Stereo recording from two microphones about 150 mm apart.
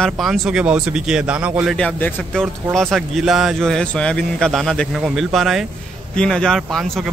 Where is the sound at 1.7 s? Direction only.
5° left (ahead or behind).